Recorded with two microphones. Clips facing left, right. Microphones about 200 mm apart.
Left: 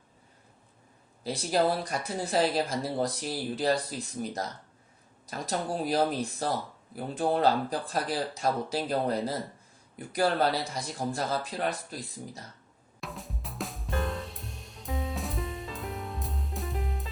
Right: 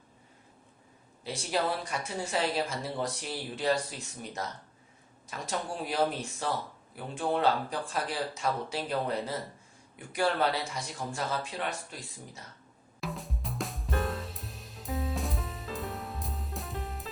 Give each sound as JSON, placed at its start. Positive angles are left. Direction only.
{"t": 1.2, "sound": "speech", "side_deg": 40}
{"t": 13.0, "sound": "drum kit", "side_deg": 0}